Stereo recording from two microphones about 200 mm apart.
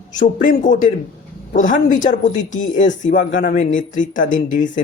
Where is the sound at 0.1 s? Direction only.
40° left (ahead or behind).